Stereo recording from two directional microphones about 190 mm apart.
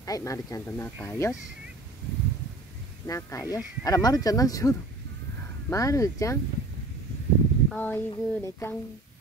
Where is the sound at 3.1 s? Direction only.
15° left (ahead or behind).